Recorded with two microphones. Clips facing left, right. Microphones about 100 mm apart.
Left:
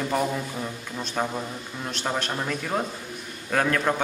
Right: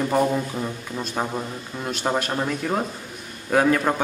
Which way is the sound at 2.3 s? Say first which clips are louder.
Right 3 dB; 10° right (ahead or behind).